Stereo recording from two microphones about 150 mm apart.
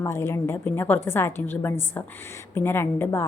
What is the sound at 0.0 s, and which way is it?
A woman's voice, 15° left (ahead or behind).